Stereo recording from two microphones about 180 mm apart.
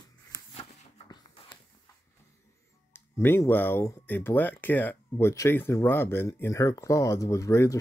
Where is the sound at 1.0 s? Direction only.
25° left (ahead or behind).